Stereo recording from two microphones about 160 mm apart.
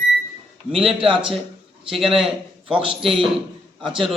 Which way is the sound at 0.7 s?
35° right (ahead or behind).